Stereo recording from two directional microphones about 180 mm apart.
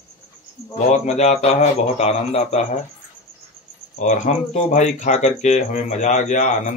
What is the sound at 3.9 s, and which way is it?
Speech, 40° left (ahead or behind).